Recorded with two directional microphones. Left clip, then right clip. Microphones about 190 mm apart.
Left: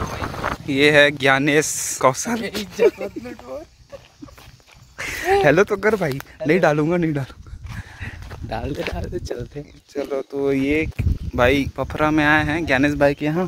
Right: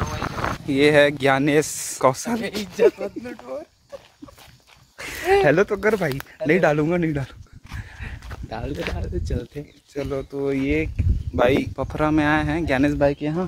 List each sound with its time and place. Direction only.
0.7 s speech: 5° right (ahead or behind)
4.9 s a sound: 10° left (ahead or behind)
5.4 s a man's voice: 25° left (ahead or behind)
7.9 s a sound: 35° left (ahead or behind)
8.5 s speech: 60° left (ahead or behind)
9.9 s speech: 40° left (ahead or behind)
10.7 s speech: 35° left (ahead or behind)
11.3 s speech: 5° left (ahead or behind)
13.0 s a man's voice: 15° left (ahead or behind)